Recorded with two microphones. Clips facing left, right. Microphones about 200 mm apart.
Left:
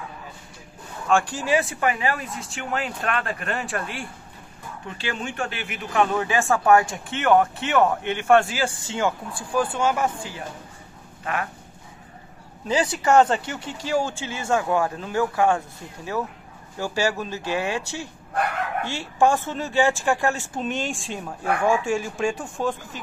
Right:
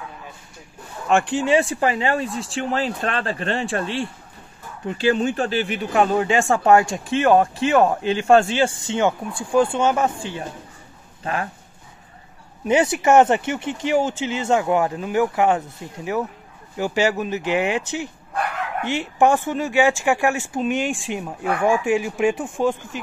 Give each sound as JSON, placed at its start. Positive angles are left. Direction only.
{"t": 1.4, "sound": "speech", "side_deg": -25}
{"t": 12.6, "sound": "speech", "side_deg": -25}